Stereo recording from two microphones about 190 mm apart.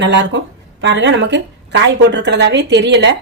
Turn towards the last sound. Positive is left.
turn(degrees=-65)  # may be behind; listen again after turning